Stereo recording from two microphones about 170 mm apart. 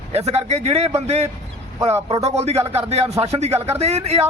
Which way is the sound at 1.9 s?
15° right (ahead or behind).